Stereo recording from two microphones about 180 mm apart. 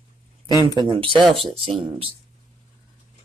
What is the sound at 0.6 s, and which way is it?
Speech, 25° right (ahead or behind).